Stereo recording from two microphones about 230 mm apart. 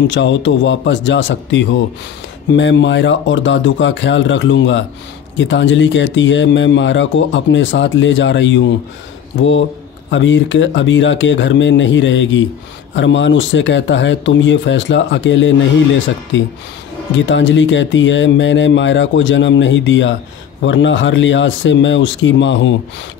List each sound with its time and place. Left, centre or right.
0.1 s speech: left
10.1 s speech: left